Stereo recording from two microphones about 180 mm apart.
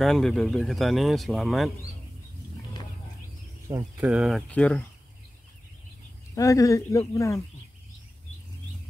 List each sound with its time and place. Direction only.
0.0 s speech: centre (ahead or behind)
3.7 s speech: 15° right (ahead or behind)
4.0 s speech: 5° right (ahead or behind)
6.3 s speech: 20° left (ahead or behind)